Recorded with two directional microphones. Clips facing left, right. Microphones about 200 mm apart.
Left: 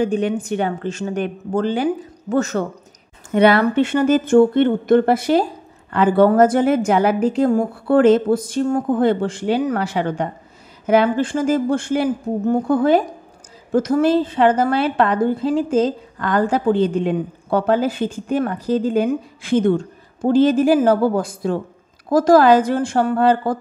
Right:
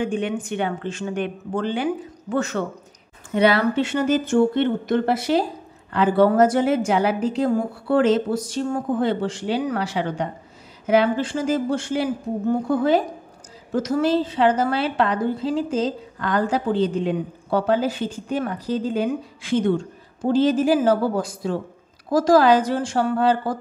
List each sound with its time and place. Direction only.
0.0 s a woman's voice: 40° left (ahead or behind)
3.3 s a woman's voice: 55° left (ahead or behind)